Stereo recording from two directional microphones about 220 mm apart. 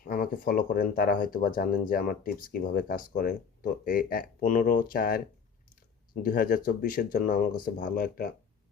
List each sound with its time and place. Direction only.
0.0 s speech: 40° left (ahead or behind)
6.2 s speech: 40° left (ahead or behind)